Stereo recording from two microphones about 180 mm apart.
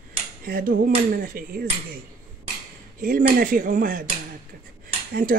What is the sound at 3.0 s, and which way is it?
Speech, 50° right (ahead or behind).